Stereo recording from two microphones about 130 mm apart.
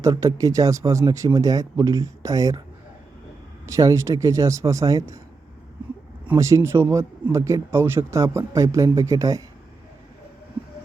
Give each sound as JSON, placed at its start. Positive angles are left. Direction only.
{"t": 0.0, "sound": "a man's voice", "side_deg": -25}
{"t": 3.7, "sound": "a man's voice", "side_deg": -25}
{"t": 6.2, "sound": "a man's voice", "side_deg": -20}